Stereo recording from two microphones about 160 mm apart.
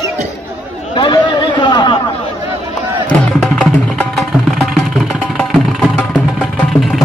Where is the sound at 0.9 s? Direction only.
30° left (ahead or behind).